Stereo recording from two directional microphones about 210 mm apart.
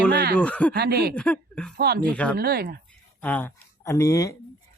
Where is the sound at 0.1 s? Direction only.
50° right (ahead or behind).